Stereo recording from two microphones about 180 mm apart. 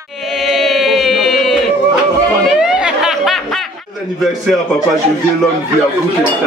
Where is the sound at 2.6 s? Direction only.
5° right (ahead or behind).